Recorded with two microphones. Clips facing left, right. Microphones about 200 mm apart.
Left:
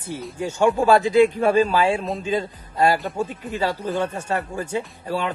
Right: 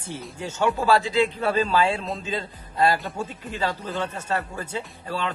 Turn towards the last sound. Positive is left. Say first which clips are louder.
# left 4 dB
turn(degrees=10)  # may be behind; listen again after turning